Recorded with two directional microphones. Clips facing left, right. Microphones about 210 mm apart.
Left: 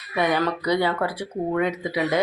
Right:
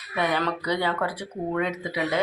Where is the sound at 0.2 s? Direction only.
10° left (ahead or behind).